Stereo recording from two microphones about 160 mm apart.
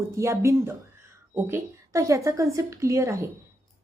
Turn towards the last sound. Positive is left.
turn(degrees=-20)  # may be behind; listen again after turning